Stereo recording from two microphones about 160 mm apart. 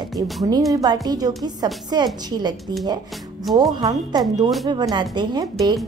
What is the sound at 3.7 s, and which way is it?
A woman's voice, 25° right (ahead or behind).